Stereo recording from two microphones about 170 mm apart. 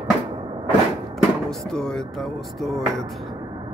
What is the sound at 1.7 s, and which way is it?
Speech, 5° left (ahead or behind).